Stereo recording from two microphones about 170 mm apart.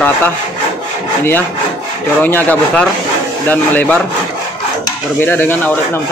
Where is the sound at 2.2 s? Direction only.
10° left (ahead or behind).